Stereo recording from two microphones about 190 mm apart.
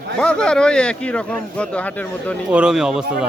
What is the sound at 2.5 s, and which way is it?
Speech, 5° right (ahead or behind).